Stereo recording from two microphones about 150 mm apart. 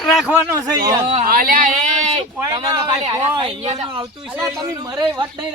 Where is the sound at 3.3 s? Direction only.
35° right (ahead or behind).